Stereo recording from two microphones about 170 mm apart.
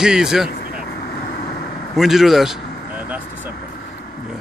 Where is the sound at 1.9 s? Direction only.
Centre (ahead or behind).